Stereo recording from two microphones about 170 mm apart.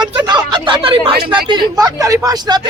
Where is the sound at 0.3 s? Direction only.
25° right (ahead or behind).